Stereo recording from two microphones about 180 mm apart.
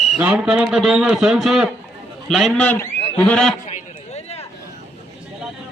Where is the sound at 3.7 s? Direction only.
35° left (ahead or behind).